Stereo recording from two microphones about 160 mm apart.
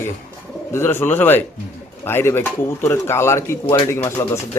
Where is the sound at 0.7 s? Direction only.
15° left (ahead or behind).